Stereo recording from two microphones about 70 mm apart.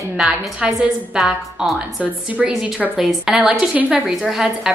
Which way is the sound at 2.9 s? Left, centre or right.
Centre.